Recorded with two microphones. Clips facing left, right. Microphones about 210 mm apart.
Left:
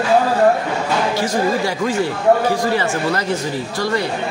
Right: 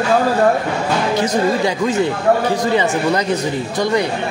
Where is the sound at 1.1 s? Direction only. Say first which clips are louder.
Right 2 dB; 20° right (ahead or behind).